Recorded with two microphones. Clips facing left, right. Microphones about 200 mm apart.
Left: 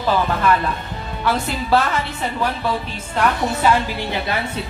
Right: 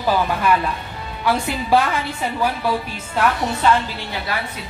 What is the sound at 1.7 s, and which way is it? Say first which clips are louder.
Speech: right 1 dB; 15° right (ahead or behind).